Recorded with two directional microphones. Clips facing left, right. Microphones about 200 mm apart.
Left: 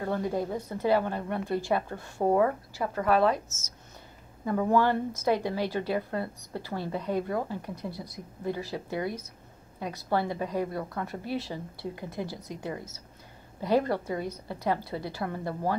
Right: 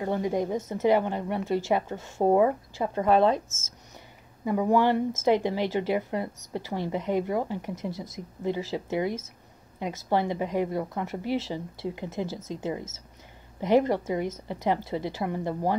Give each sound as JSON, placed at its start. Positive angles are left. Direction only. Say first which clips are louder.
{"t": 0.0, "sound": "a woman's voice", "louder": "right 3 dB", "side_deg": -15}
{"t": 4.5, "sound": "a woman's voice", "louder": "right 2 dB", "side_deg": -15}